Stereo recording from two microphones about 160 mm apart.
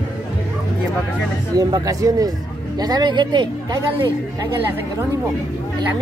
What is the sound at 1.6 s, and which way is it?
Speech, 25° right (ahead or behind).